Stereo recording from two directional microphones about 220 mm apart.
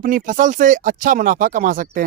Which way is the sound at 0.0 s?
40° right (ahead or behind).